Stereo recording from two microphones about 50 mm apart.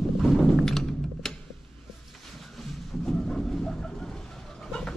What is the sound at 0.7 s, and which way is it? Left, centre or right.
Music, centre.